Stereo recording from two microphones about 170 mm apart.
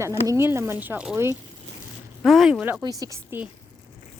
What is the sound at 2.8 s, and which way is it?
Speech, 20° right (ahead or behind).